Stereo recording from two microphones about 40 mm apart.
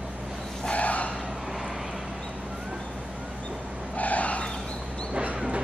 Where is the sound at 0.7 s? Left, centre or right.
Left.